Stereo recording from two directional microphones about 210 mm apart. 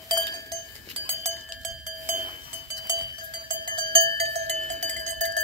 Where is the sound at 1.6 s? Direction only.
5° right (ahead or behind).